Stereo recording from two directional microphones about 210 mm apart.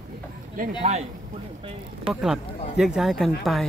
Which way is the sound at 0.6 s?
30° right (ahead or behind).